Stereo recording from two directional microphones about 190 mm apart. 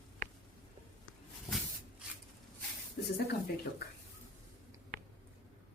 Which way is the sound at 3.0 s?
60° left (ahead or behind).